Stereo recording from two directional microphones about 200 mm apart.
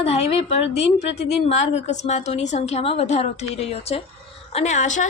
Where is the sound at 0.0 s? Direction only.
30° left (ahead or behind).